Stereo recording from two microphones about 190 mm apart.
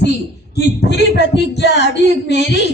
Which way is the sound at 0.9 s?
65° left (ahead or behind).